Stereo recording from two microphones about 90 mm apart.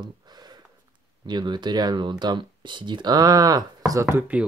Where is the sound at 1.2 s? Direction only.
55° right (ahead or behind).